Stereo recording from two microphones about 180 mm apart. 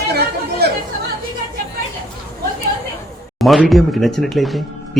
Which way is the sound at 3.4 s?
Centre (ahead or behind).